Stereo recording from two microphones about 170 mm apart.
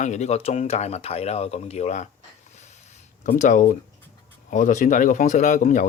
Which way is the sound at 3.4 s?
50° left (ahead or behind).